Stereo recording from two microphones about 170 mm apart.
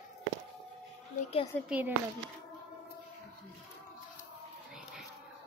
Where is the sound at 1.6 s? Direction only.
10° right (ahead or behind).